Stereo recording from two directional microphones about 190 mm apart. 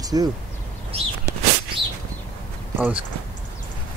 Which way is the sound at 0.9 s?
30° right (ahead or behind).